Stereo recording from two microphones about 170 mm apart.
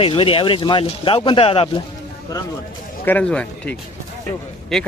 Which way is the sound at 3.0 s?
10° left (ahead or behind).